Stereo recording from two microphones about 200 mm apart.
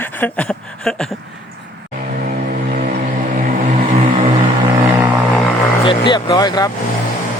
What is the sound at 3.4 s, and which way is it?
Vehicle, 35° right (ahead or behind).